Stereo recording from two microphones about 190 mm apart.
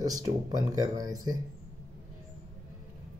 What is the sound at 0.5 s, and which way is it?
Speech, 20° right (ahead or behind).